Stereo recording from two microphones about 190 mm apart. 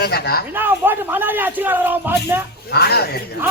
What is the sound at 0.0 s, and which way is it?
Speech, 55° left (ahead or behind).